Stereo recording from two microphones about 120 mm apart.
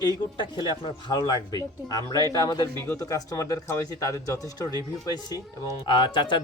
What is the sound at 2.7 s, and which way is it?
Speech, 20° left (ahead or behind).